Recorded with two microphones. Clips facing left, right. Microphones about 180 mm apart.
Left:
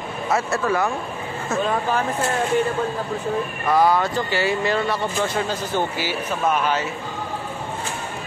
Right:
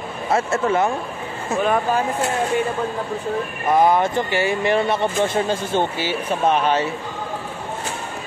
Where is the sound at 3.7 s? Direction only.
20° right (ahead or behind).